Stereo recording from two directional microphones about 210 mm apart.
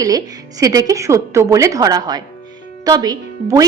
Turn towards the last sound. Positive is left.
turn(degrees=-20)  # may be behind; listen again after turning